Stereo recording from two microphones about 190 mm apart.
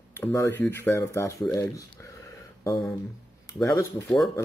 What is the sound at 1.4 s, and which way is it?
Speech, 5° left (ahead or behind).